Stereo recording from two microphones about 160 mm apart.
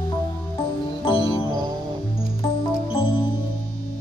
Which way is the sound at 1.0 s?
35° left (ahead or behind).